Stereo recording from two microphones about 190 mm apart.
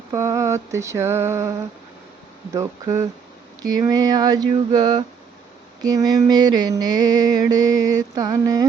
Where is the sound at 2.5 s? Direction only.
15° right (ahead or behind).